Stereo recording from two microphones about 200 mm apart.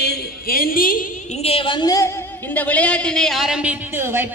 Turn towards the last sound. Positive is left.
turn(degrees=-10)  # may be behind; listen again after turning